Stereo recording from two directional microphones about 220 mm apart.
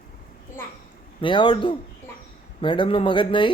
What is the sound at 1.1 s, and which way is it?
A man's voice, 20° left (ahead or behind).